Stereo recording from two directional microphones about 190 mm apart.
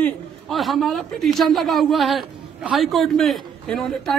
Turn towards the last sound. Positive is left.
turn(degrees=0)  # may be behind; listen again after turning